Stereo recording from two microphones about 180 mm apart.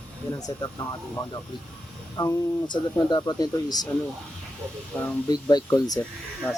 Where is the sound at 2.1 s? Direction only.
20° left (ahead or behind).